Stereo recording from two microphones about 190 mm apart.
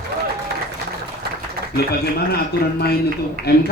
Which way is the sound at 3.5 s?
55° left (ahead or behind).